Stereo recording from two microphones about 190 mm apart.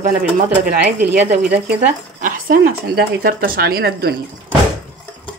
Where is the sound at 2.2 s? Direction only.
50° right (ahead or behind).